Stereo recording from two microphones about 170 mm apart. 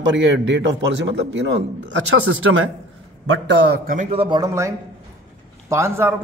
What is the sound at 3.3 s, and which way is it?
Speech, 80° right.